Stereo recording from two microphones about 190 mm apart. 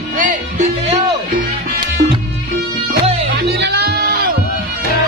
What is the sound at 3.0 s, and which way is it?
Music, 30° right (ahead or behind).